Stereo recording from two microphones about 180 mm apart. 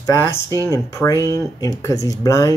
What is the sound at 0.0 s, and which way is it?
Speech, 15° left (ahead or behind).